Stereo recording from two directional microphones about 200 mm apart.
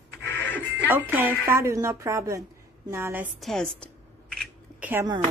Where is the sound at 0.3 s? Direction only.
10° left (ahead or behind).